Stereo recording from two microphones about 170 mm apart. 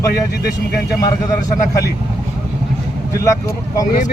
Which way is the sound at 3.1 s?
20° left (ahead or behind).